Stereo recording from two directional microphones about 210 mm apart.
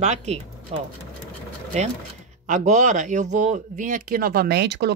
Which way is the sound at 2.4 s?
35° right (ahead or behind).